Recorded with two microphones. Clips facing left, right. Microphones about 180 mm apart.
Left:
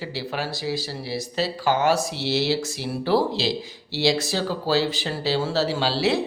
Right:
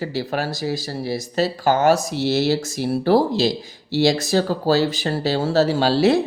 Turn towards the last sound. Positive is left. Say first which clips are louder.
# right 6 dB
turn(degrees=-45)  # may be behind; listen again after turning